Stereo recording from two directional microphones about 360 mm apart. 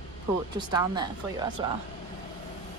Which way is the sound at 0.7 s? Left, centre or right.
Centre.